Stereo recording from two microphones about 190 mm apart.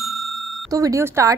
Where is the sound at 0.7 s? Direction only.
15° right (ahead or behind).